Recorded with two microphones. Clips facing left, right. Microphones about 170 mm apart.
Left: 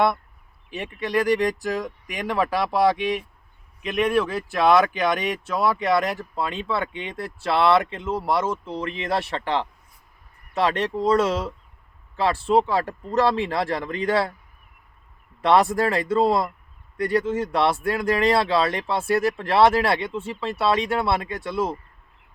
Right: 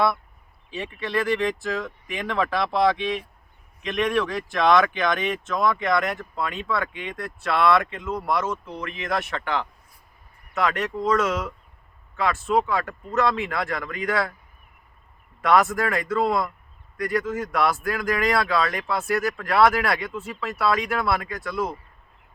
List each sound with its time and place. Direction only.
0.7 s speech: 15° left (ahead or behind)
5.8 s speech: 30° left (ahead or behind)
15.4 s speech: 30° left (ahead or behind)